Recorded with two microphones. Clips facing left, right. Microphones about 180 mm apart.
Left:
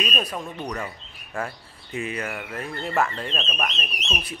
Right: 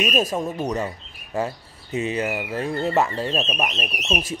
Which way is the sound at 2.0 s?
25° right (ahead or behind).